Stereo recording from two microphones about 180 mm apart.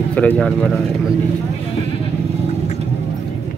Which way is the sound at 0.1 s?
5° left (ahead or behind).